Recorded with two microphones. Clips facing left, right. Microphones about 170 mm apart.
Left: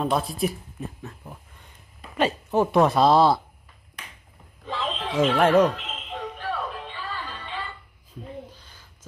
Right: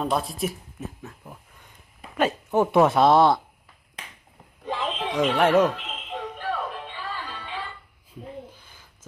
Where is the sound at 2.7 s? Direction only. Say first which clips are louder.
Right 1 dB; centre (ahead or behind).